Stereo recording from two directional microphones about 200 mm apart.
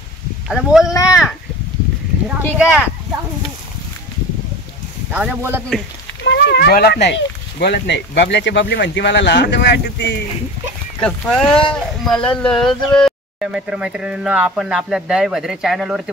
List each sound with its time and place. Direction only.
0.5 s speech: centre (ahead or behind)
5.1 s speech: 5° right (ahead or behind)
6.2 s speech: 55° left (ahead or behind)
11.0 s speech: 5° left (ahead or behind)